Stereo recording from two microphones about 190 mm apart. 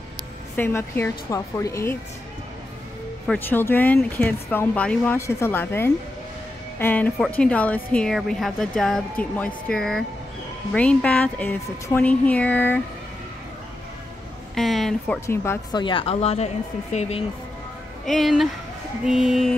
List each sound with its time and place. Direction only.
0.6 s speech: 10° left (ahead or behind)
3.3 s a woman's voice: 10° left (ahead or behind)
14.5 s speech: centre (ahead or behind)
15.1 s speech: 15° left (ahead or behind)
15.8 s speech: 30° left (ahead or behind)
18.0 s a woman's voice: centre (ahead or behind)